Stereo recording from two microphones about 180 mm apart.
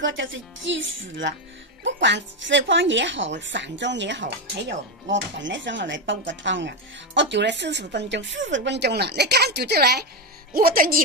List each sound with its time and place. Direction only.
0.0 s a woman's voice: 90° right; by 11.0 s 50° right (ahead or behind)